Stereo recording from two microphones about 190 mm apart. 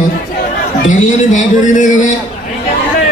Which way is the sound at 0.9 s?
40° left (ahead or behind).